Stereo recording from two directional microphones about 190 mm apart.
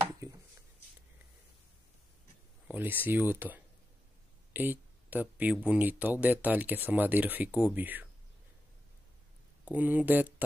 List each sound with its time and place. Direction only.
0.2 s chopping: 15° right (ahead or behind)
2.7 s speech: 10° right (ahead or behind)
9.7 s speech: 10° right (ahead or behind)